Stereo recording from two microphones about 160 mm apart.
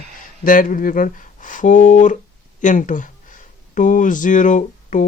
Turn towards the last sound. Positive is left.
turn(degrees=50)  # may be behind; listen again after turning